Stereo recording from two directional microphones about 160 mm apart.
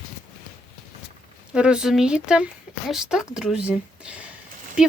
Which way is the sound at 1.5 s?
5° right (ahead or behind).